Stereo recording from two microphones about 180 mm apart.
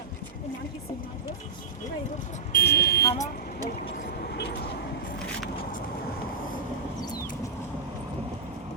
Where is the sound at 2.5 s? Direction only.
55° left (ahead or behind).